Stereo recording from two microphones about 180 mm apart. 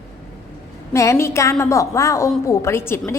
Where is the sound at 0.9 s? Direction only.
15° left (ahead or behind).